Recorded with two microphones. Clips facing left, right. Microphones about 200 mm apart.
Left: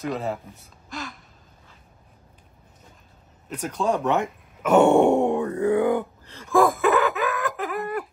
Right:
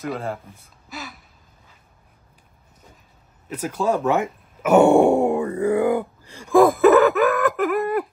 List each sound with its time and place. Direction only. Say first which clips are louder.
0.0 s speech: even; centre (ahead or behind)
0.8 s gasp: left 1 dB; 5° right (ahead or behind)
3.4 s speech: right 2 dB; 5° right (ahead or behind)
6.8 s a sound: right 7 dB; 45° right (ahead or behind)